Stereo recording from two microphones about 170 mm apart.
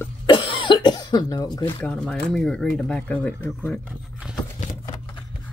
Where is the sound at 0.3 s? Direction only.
30° left (ahead or behind).